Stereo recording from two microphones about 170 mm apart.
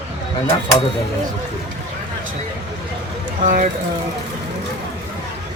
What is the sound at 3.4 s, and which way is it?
Speech, 50° right (ahead or behind).